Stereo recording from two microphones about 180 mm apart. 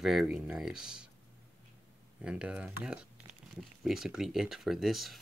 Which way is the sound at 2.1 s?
5° right (ahead or behind).